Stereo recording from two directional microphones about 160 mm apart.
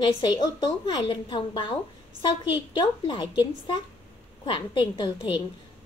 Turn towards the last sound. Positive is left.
turn(degrees=30)  # may be behind; listen again after turning